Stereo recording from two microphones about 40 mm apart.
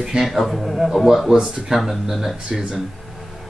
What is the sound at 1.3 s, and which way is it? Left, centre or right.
Speech, right.